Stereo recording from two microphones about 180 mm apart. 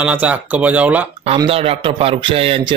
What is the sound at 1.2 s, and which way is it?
A man's voice, 35° right (ahead or behind).